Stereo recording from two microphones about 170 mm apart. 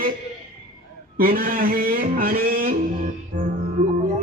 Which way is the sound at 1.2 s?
55° right (ahead or behind).